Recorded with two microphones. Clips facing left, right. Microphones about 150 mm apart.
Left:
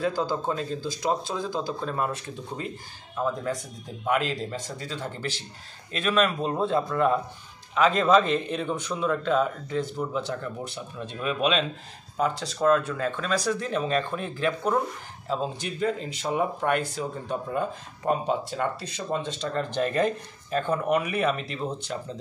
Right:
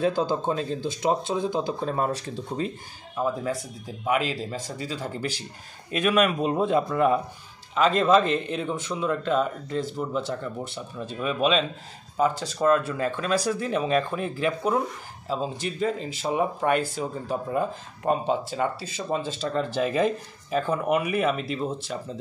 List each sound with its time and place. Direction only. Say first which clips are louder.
0.0 s speech: right 3 dB; 25° right (ahead or behind)
3.2 s a man's voice: right 1 dB; 5° right (ahead or behind)
7.7 s speech: even; centre (ahead or behind)